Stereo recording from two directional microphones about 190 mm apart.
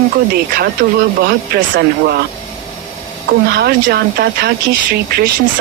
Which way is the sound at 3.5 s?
60° right (ahead or behind).